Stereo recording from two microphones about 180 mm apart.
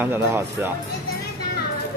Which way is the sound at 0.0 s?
10° right (ahead or behind).